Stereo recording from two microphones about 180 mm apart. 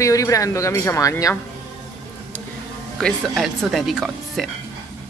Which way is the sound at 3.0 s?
5° left (ahead or behind).